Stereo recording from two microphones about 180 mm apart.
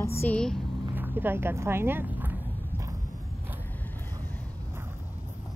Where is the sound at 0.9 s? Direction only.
10° right (ahead or behind).